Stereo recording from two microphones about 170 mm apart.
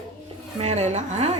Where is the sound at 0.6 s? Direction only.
40° right (ahead or behind).